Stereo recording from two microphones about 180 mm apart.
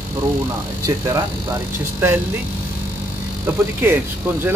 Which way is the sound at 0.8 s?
15° right (ahead or behind).